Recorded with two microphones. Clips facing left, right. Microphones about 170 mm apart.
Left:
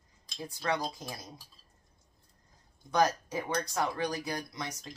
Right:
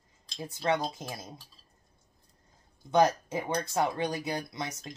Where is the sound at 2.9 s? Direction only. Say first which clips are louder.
Right 3 dB; 25° right (ahead or behind).